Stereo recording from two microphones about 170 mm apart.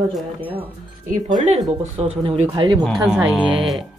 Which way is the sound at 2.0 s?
35° right (ahead or behind).